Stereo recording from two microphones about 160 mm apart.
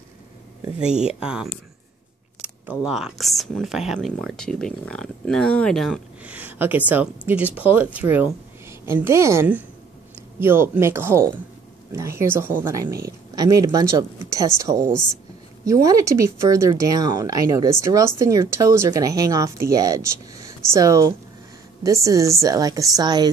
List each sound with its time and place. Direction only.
1.0 s speech: 5° right (ahead or behind)
6.2 s speech: 10° right (ahead or behind); by 23.3 s 25° right (ahead or behind)